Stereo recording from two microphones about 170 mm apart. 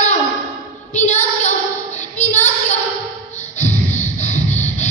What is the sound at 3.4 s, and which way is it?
Music, 45° left (ahead or behind).